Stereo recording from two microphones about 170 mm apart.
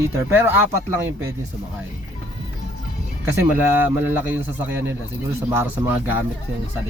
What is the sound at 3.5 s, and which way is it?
Speech, 10° right (ahead or behind).